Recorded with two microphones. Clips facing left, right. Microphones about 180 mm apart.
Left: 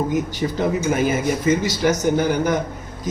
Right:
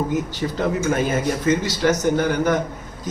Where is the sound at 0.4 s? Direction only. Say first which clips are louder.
Left 1 dB; 15° left (ahead or behind).